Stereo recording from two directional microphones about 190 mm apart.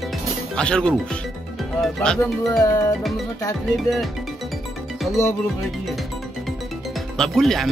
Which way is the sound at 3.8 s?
Centre (ahead or behind).